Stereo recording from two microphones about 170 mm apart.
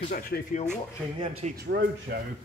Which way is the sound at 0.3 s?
90° left.